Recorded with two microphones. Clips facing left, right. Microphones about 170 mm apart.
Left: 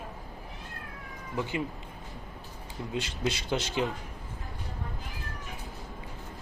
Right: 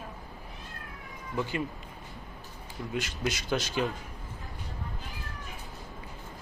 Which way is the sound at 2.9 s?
30° left (ahead or behind).